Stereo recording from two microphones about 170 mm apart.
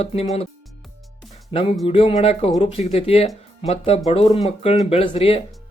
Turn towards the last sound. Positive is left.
turn(degrees=35)  # may be behind; listen again after turning